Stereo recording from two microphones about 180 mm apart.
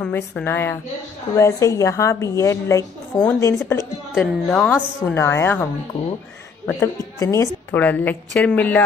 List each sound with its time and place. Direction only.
0.0 s a woman's voice: 10° left (ahead or behind)
6.8 s a woman's voice: 15° left (ahead or behind)